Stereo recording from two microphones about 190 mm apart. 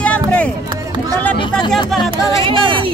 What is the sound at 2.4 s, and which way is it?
Speech, 25° right (ahead or behind).